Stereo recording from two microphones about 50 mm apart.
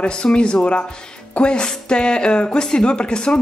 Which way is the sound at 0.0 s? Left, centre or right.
Centre.